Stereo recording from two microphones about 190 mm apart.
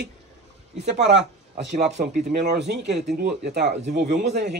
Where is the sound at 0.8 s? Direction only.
65° right (ahead or behind).